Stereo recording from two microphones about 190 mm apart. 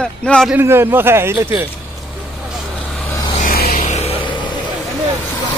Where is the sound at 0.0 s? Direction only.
5° left (ahead or behind).